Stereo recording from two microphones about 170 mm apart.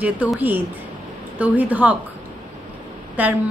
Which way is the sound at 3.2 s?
10° right (ahead or behind).